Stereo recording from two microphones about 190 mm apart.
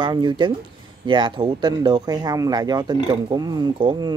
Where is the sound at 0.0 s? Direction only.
25° right (ahead or behind).